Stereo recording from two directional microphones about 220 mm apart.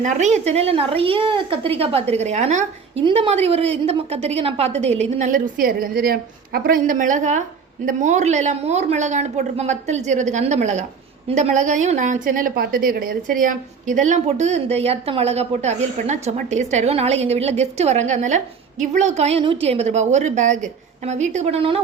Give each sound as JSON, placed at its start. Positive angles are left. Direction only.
{"t": 0.0, "sound": "a woman's voice", "side_deg": -35}